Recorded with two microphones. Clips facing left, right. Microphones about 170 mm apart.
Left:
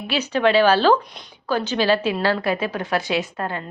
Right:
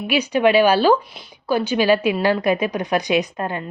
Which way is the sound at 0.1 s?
15° right (ahead or behind).